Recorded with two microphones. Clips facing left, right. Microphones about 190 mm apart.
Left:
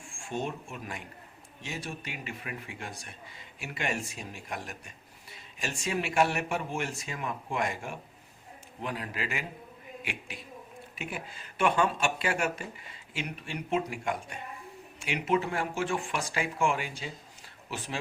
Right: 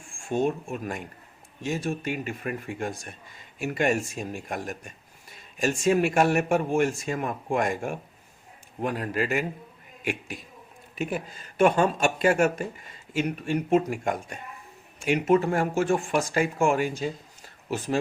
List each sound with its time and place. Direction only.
0.3 s speech: 45° right (ahead or behind)